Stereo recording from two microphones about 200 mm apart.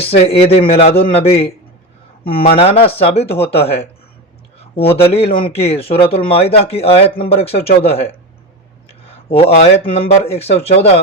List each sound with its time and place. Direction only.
0.0 s speech: 30° left (ahead or behind)
9.4 s speech: 30° left (ahead or behind)